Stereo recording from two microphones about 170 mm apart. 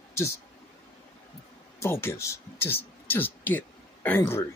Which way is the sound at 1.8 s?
15° left (ahead or behind).